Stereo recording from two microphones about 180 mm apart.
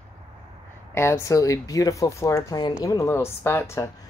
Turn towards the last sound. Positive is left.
turn(degrees=15)  # may be behind; listen again after turning